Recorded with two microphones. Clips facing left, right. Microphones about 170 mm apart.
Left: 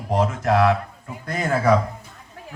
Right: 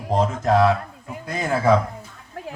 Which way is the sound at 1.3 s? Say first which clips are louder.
Even; 20° right (ahead or behind).